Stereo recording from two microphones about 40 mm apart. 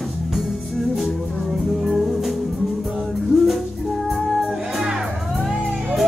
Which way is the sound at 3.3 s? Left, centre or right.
Centre.